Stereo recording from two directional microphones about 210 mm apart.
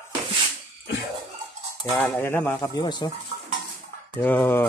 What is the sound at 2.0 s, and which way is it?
Speech, 10° left (ahead or behind).